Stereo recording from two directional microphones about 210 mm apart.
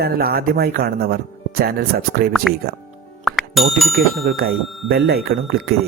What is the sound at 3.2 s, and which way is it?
Music, centre (ahead or behind).